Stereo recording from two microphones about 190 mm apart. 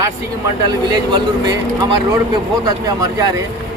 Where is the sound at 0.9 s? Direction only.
20° right (ahead or behind).